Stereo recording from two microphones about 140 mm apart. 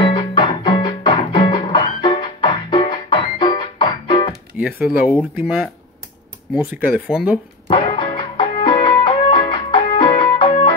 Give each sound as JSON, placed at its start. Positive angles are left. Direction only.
{"t": 0.0, "sound": "music", "side_deg": 40}
{"t": 4.6, "sound": "speech", "side_deg": -10}
{"t": 7.6, "sound": "music", "side_deg": 40}